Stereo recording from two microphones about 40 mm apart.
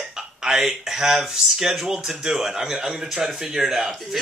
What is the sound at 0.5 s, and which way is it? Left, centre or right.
Speech, centre.